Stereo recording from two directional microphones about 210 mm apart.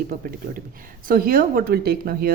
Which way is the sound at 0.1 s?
40° right (ahead or behind).